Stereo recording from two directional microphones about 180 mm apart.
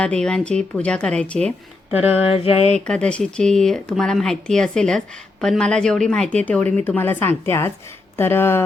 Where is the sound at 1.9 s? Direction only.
10° right (ahead or behind).